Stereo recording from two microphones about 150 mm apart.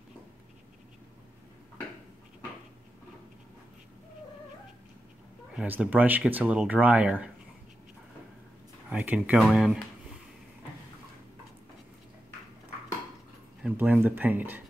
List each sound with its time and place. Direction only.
5.5 s speech: 5° right (ahead or behind)
8.9 s speech: 10° right (ahead or behind)
13.6 s speech: 10° right (ahead or behind)